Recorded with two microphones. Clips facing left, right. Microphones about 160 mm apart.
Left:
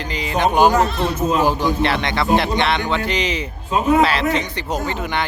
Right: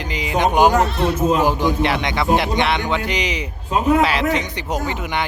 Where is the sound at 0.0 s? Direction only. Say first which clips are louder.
Even; 15° right (ahead or behind).